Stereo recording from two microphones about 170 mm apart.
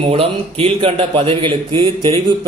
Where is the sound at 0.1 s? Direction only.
35° right (ahead or behind).